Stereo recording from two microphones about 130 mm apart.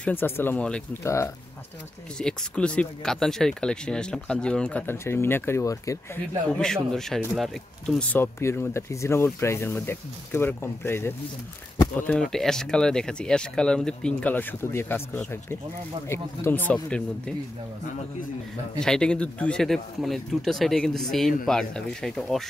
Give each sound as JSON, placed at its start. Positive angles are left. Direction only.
{"t": 0.0, "sound": "speech", "side_deg": 15}
{"t": 1.0, "sound": "speech", "side_deg": 20}
{"t": 2.1, "sound": "speech", "side_deg": 5}
{"t": 4.9, "sound": "speech", "side_deg": 20}
{"t": 6.5, "sound": "speech", "side_deg": 5}
{"t": 12.1, "sound": "speech", "side_deg": 5}
{"t": 16.1, "sound": "speech", "side_deg": 15}
{"t": 18.8, "sound": "speech", "side_deg": 5}